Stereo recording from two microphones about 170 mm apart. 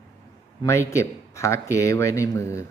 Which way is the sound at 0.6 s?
15° left (ahead or behind).